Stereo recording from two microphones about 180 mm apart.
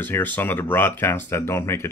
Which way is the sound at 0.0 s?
10° left (ahead or behind).